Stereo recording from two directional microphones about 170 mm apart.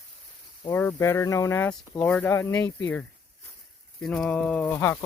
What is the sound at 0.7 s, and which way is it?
Speech, 15° left (ahead or behind).